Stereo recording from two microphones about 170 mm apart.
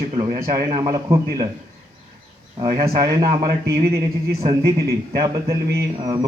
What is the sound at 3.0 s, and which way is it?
Speech, 25° right (ahead or behind).